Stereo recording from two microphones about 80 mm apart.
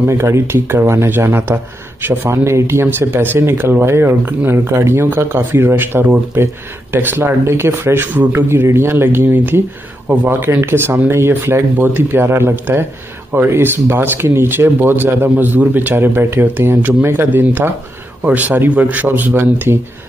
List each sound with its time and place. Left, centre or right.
0.0 s speech: right